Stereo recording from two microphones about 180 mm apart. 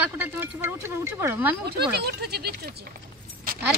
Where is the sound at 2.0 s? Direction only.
60° right (ahead or behind).